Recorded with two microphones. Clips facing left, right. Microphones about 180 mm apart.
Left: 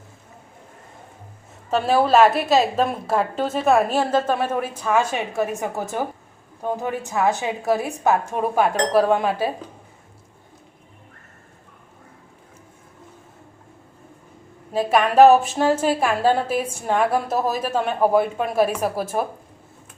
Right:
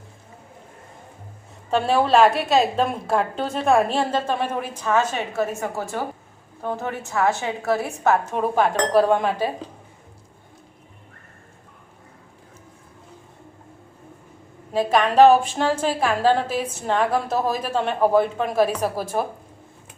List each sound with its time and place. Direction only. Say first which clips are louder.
1.7 s a woman's voice: left 1 dB; 5° left (ahead or behind)
14.7 s a woman's voice: even; 5° left (ahead or behind)